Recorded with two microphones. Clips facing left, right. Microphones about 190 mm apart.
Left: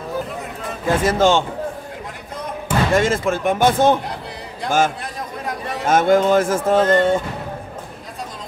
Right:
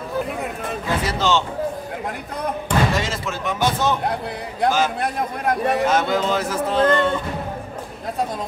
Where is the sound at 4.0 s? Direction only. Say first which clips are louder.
Right 5 dB; 55° right (ahead or behind).